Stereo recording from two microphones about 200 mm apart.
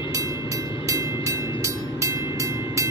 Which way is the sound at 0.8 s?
15° right (ahead or behind).